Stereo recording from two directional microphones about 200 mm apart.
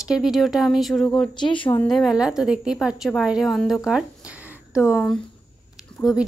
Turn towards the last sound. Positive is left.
turn(degrees=5)  # may be behind; listen again after turning